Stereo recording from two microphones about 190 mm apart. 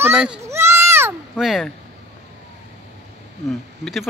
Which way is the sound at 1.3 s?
Centre (ahead or behind).